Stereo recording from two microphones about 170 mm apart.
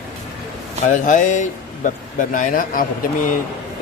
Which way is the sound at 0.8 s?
50° left (ahead or behind).